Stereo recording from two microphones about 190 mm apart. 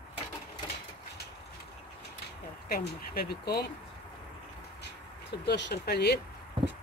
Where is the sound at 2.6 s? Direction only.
50° left (ahead or behind).